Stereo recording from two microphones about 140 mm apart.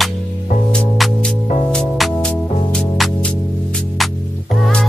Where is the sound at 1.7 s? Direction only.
5° left (ahead or behind).